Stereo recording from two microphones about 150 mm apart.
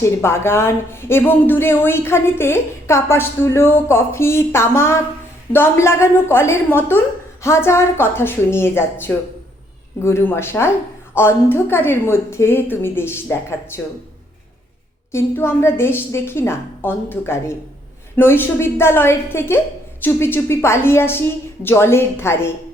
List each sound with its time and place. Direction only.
0.0 s a woman's voice: 15° left (ahead or behind)
15.1 s a woman's voice: 15° left (ahead or behind)